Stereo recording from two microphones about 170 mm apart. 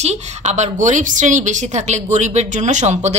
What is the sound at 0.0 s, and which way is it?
A woman's voice, 40° right (ahead or behind).